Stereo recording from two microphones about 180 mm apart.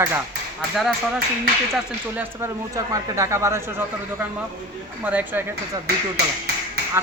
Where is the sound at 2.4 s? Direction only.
15° right (ahead or behind).